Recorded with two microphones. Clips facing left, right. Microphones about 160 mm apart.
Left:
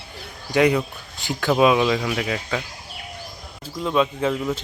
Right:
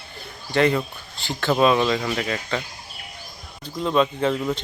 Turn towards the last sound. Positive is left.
turn(degrees=0)  # may be behind; listen again after turning